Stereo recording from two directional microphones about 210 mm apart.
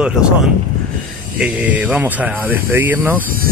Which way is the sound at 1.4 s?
5° right (ahead or behind).